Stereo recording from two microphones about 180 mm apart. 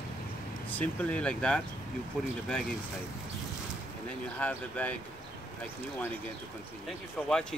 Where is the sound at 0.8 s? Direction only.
5° left (ahead or behind).